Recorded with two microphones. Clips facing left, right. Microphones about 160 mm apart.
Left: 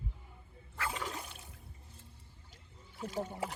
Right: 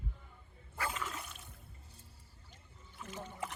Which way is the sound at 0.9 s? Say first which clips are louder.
Left 2 dB; 35° left (ahead or behind).